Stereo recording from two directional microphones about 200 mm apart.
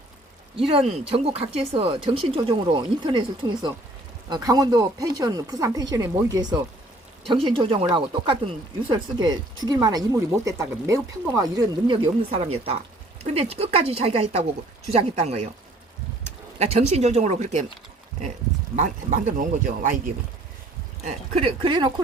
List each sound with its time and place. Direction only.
0.5 s speech: 30° right (ahead or behind)
16.6 s speech: 35° right (ahead or behind)
18.8 s speech: 40° right (ahead or behind)
21.0 s speech: 30° right (ahead or behind)